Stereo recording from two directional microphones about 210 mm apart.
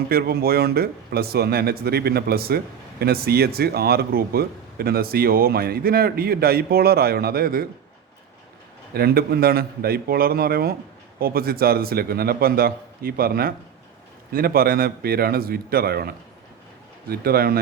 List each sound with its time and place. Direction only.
0.1 s speech: 45° right (ahead or behind)
9.0 s speech: 50° right (ahead or behind)